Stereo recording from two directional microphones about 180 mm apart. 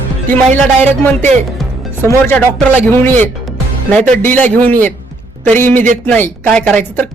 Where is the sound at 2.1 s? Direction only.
10° left (ahead or behind).